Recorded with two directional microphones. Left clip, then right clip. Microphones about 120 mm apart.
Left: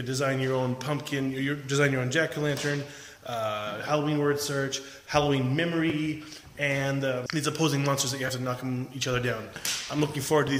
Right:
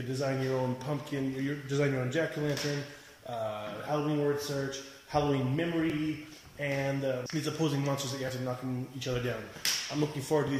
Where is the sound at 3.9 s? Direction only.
20° left (ahead or behind).